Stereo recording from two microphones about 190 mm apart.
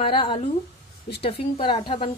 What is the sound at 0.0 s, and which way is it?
A woman's voice, 25° left (ahead or behind).